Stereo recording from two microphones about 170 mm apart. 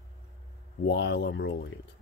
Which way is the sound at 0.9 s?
80° left.